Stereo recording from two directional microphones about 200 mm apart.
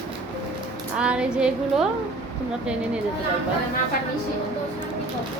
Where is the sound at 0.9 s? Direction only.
5° right (ahead or behind).